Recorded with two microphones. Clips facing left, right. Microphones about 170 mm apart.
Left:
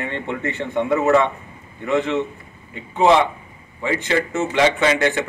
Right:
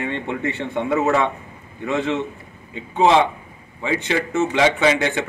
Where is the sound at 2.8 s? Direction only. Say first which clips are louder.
Left 1 dB; 20° right (ahead or behind).